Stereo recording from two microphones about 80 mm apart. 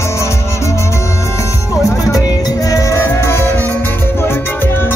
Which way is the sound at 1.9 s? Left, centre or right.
Left.